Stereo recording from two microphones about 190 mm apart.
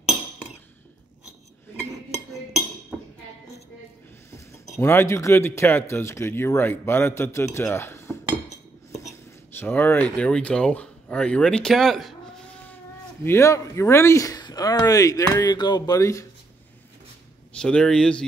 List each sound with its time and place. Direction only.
4.7 s speech: 15° left (ahead or behind)
9.6 s speech: 10° left (ahead or behind)
13.2 s speech: 15° left (ahead or behind)
17.6 s speech: 5° left (ahead or behind)